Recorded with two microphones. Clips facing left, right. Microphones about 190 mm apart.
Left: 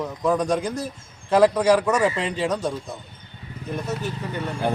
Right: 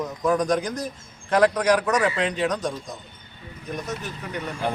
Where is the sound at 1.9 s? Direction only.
30° left (ahead or behind).